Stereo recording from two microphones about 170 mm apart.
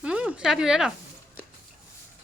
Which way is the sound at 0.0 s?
5° right (ahead or behind).